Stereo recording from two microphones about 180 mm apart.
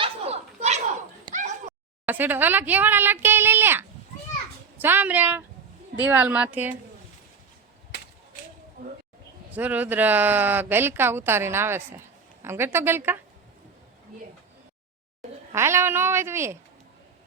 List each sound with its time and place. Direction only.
0.0 s a sound: 35° right (ahead or behind)
2.0 s speech: 10° right (ahead or behind)
8.8 s speech: 55° right (ahead or behind)
9.5 s speech: 10° right (ahead or behind)
15.5 s speech: 15° right (ahead or behind)